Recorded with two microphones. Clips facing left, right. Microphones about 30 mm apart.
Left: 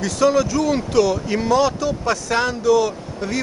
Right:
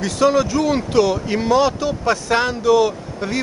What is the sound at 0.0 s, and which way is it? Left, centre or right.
A man's voice, centre.